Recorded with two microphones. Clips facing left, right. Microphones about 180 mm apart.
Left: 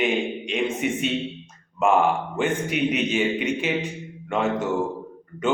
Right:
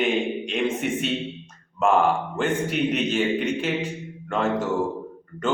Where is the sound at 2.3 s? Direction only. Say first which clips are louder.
Even; 5° left (ahead or behind).